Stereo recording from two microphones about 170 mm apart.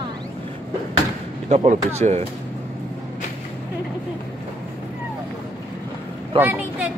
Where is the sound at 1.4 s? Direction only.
40° right (ahead or behind).